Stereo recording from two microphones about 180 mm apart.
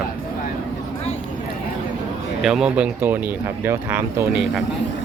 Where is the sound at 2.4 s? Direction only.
5° right (ahead or behind).